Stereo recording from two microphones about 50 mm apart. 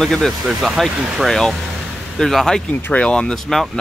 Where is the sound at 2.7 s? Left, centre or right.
Left.